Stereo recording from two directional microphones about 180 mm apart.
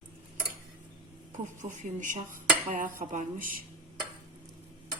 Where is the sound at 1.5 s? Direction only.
45° right (ahead or behind).